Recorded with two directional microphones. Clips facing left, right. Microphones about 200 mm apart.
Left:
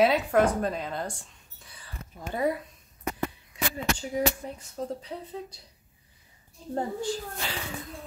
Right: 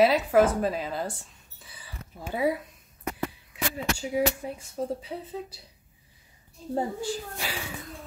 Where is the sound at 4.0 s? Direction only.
10° right (ahead or behind).